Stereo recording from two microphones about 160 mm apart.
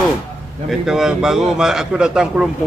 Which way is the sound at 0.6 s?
Centre (ahead or behind).